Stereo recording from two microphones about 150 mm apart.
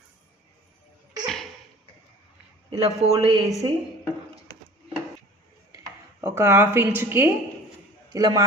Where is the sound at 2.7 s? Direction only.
40° right (ahead or behind).